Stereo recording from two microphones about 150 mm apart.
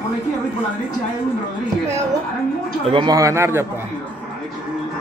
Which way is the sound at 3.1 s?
20° right (ahead or behind).